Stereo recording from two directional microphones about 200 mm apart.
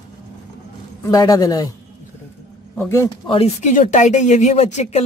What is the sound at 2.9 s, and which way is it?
Speech, 15° left (ahead or behind).